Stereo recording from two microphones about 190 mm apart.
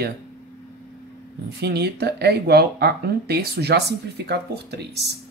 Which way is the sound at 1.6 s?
60° right (ahead or behind).